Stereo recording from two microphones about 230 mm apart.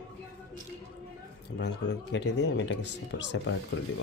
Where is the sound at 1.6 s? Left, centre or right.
Left.